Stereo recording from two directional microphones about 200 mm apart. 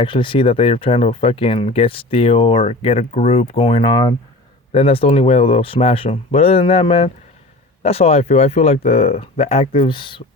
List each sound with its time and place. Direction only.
0.0 s speech: 25° left (ahead or behind)